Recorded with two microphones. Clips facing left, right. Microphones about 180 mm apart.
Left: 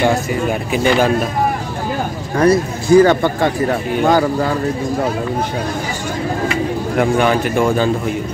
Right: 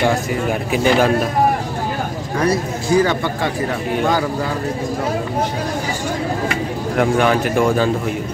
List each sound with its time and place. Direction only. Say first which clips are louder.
0.5 s speech: even; centre (ahead or behind)
2.4 s speech: left 6 dB; 50° left (ahead or behind)
7.0 s speech: left 1 dB; centre (ahead or behind)